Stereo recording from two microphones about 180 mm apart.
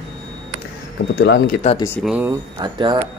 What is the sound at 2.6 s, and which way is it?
Speech, 25° right (ahead or behind).